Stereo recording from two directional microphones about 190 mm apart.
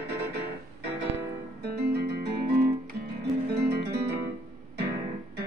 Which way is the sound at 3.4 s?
60° right (ahead or behind).